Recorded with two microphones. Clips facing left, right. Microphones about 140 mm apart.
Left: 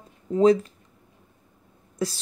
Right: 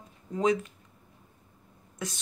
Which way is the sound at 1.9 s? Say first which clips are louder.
Left 9 dB; 35° left (ahead or behind).